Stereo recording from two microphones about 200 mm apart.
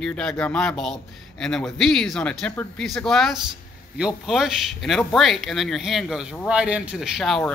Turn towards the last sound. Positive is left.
turn(degrees=0)  # may be behind; listen again after turning